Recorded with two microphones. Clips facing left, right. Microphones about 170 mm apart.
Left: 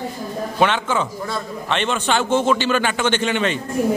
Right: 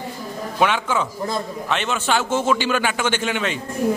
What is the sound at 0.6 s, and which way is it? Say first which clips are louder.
A man's voice: left 1 dB; 10° right (ahead or behind).